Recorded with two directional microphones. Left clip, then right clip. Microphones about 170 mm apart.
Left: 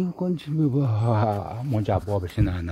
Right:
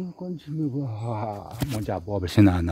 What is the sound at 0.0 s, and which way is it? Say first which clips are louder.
Speech: left 7 dB; 25° left (ahead or behind).